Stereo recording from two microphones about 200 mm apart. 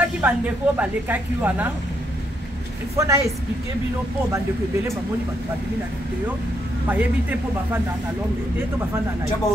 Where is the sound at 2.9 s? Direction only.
15° right (ahead or behind).